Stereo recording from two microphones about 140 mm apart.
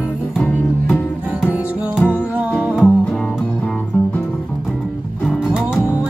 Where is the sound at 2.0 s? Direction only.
5° left (ahead or behind).